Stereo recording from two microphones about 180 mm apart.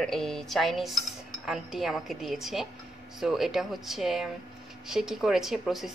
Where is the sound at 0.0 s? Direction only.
Centre (ahead or behind).